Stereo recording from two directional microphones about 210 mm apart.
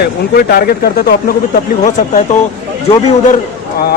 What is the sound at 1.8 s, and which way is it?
Speech, 35° left (ahead or behind).